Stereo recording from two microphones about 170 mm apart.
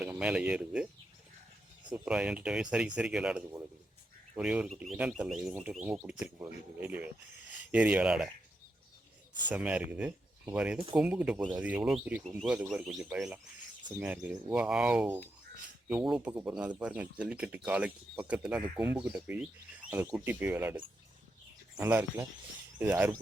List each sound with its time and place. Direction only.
0.0 s speech: 5° right (ahead or behind)
1.9 s speech: 5° right (ahead or behind)
9.5 s speech: 10° right (ahead or behind)